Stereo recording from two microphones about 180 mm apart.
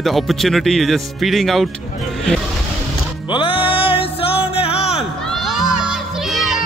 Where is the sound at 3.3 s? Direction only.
25° left (ahead or behind).